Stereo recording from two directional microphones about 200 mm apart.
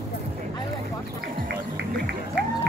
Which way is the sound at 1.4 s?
55° right (ahead or behind).